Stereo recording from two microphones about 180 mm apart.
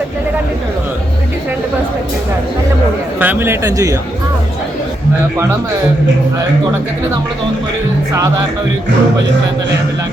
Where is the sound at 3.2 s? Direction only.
10° right (ahead or behind).